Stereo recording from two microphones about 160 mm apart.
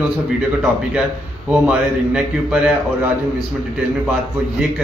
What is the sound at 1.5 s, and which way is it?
A man's voice, 5° right (ahead or behind).